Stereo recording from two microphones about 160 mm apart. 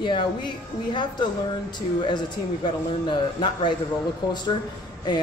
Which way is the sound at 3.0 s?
30° left (ahead or behind).